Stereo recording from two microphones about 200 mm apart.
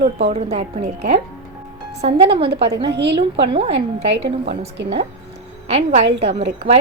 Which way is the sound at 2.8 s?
60° right (ahead or behind).